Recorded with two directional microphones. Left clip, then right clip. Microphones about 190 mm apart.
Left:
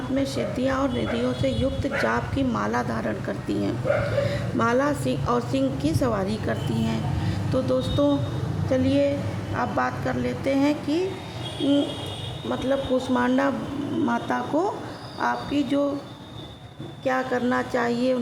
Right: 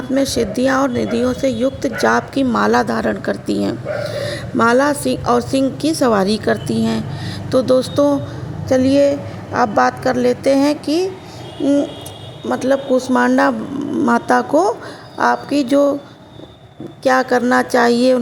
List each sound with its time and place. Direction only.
0.1 s a woman's voice: 40° right (ahead or behind)
12.5 s a woman's voice: 40° right (ahead or behind)
17.0 s a woman's voice: 40° right (ahead or behind)